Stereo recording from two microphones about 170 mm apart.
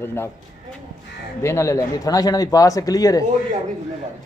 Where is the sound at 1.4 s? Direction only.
15° left (ahead or behind).